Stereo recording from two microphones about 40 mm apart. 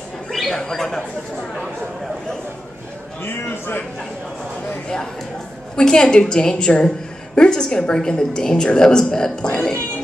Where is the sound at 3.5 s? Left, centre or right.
Left.